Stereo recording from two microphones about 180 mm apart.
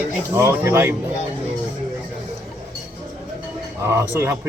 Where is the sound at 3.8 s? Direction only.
15° right (ahead or behind).